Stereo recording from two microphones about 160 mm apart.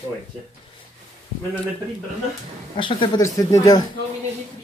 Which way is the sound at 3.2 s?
20° left (ahead or behind).